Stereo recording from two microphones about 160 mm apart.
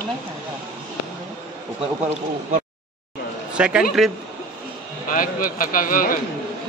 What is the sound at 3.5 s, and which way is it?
Speech, 5° right (ahead or behind).